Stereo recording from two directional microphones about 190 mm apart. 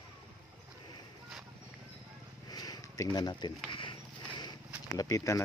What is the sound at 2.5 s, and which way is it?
Speech, 20° left (ahead or behind).